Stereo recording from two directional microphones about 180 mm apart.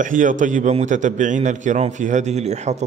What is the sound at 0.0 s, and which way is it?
A man's voice, 45° right (ahead or behind).